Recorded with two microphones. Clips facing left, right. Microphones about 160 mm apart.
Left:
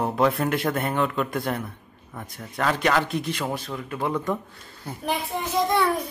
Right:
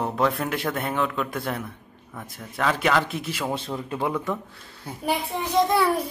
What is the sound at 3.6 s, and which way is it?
Speech, 25° right (ahead or behind).